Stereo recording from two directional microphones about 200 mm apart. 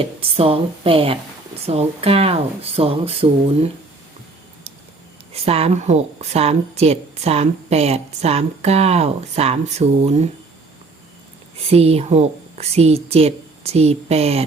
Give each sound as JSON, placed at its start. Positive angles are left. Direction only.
{"t": 0.0, "sound": "speech", "side_deg": -30}
{"t": 5.3, "sound": "a woman's voice", "side_deg": -30}
{"t": 11.5, "sound": "a woman's voice", "side_deg": -30}